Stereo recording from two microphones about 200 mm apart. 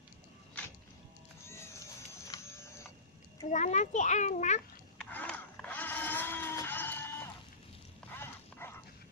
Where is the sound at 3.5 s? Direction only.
35° left (ahead or behind).